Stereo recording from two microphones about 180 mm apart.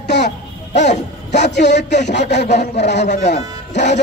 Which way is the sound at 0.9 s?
70° left (ahead or behind).